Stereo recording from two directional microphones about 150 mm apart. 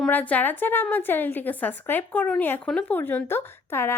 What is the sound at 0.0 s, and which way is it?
A woman's voice, 10° left (ahead or behind).